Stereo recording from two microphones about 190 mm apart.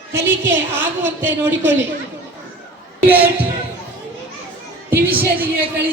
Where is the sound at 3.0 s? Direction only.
10° right (ahead or behind).